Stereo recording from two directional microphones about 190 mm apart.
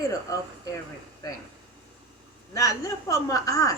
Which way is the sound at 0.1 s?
15° left (ahead or behind).